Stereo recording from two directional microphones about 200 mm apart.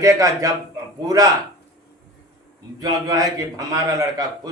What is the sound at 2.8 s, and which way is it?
A man's voice, 20° right (ahead or behind).